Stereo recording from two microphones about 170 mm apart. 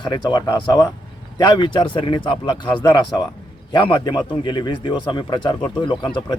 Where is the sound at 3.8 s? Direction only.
25° left (ahead or behind).